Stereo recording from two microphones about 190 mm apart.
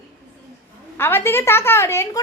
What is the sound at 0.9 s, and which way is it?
A woman's voice, 10° left (ahead or behind).